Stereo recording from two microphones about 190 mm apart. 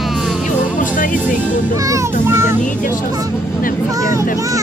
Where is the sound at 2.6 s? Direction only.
45° left (ahead or behind).